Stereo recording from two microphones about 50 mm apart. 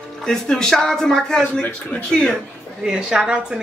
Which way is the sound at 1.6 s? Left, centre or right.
Left.